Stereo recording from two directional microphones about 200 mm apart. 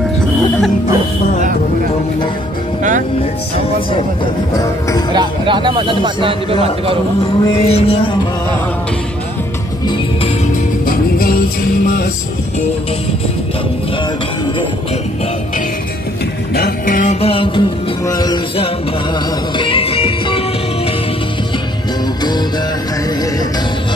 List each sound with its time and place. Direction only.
5.1 s speech: 25° right (ahead or behind)
7.2 s a sound: 25° left (ahead or behind)
10.9 s music: 50° left (ahead or behind)
16.5 s music: 45° left (ahead or behind); by 20.3 s 30° left (ahead or behind)